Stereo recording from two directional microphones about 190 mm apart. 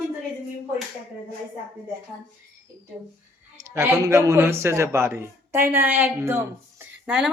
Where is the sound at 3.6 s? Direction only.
15° right (ahead or behind).